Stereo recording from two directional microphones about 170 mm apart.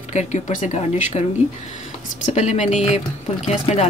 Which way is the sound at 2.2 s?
45° left (ahead or behind).